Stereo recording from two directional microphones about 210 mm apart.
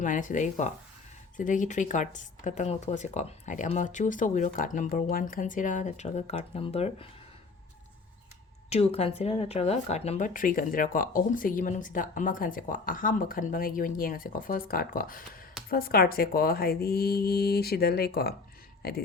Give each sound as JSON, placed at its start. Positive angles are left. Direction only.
{"t": 0.0, "sound": "speech", "side_deg": 40}
{"t": 8.7, "sound": "speech", "side_deg": 30}